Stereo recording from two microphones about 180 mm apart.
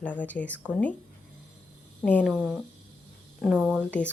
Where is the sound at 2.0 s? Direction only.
5° left (ahead or behind).